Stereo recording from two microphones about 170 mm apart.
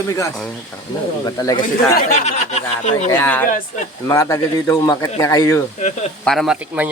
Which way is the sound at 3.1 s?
15° left (ahead or behind).